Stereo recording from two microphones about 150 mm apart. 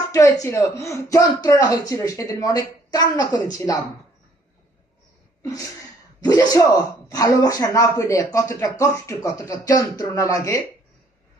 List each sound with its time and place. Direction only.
0.1 s speech: 20° left (ahead or behind)
5.4 s a sound: 20° left (ahead or behind)
6.2 s speech: 25° left (ahead or behind)